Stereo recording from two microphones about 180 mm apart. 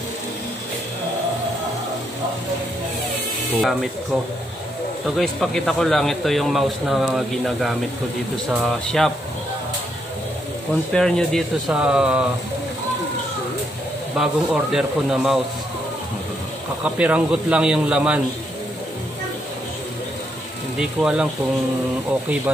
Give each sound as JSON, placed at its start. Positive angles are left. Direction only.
{"t": 5.1, "sound": "a man's voice", "side_deg": 0}
{"t": 10.9, "sound": "a man's voice", "side_deg": 5}
{"t": 14.1, "sound": "a man's voice", "side_deg": -5}
{"t": 16.8, "sound": "a man's voice", "side_deg": -5}
{"t": 20.8, "sound": "a man's voice", "side_deg": -5}